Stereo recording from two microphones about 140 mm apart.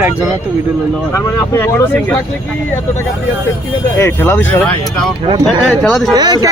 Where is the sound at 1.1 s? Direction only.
20° left (ahead or behind).